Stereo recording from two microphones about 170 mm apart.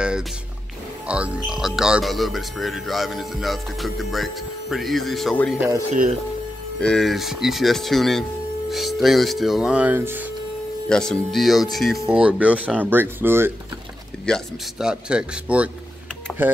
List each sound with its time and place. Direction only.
1.0 s speech: 5° right (ahead or behind)
5.9 s speech: 40° right (ahead or behind)
6.8 s speech: 5° left (ahead or behind)
10.9 s speech: 5° left (ahead or behind); by 13.5 s 15° right (ahead or behind)
14.2 s speech: centre (ahead or behind)
16.3 s speech: 10° left (ahead or behind)